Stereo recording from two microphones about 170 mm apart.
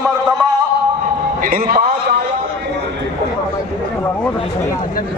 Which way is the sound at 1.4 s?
55° right (ahead or behind).